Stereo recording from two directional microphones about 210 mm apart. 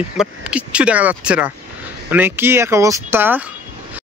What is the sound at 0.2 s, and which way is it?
A man's voice, 5° right (ahead or behind).